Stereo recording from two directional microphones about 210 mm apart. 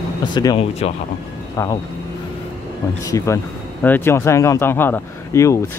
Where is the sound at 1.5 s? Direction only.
15° left (ahead or behind).